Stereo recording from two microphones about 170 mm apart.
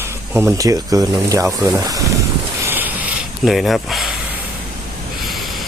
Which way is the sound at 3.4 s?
Centre (ahead or behind).